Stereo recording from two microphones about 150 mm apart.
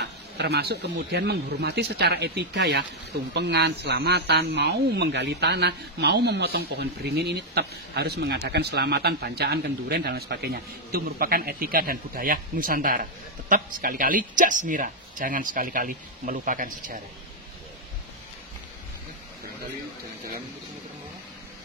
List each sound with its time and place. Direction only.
0.0 s speech: 90° right; by 17.0 s 60° right (ahead or behind)